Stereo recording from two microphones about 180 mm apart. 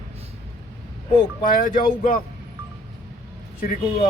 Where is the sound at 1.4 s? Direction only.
50° left (ahead or behind).